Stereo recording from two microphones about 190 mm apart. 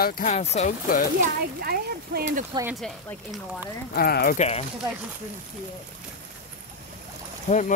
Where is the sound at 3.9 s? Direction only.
50° left (ahead or behind).